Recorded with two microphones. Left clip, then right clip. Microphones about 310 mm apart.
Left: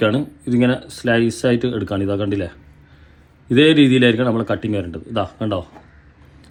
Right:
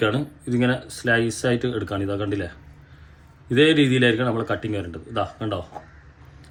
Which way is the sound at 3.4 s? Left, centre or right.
Centre.